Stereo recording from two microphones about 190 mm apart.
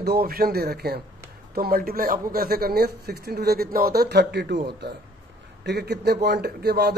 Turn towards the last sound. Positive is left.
turn(degrees=-55)  # may be behind; listen again after turning